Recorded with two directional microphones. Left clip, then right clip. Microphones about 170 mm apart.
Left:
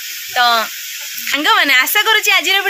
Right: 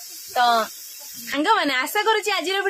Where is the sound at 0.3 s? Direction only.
5° left (ahead or behind).